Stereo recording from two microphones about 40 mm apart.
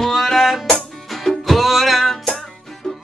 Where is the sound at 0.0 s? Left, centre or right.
Centre.